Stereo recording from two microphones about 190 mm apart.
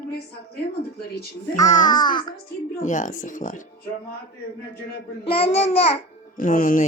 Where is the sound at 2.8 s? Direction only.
40° left (ahead or behind).